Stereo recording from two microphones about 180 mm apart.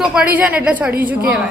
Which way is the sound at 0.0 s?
5° right (ahead or behind).